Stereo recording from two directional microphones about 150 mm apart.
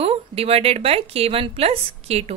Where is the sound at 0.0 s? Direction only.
40° right (ahead or behind).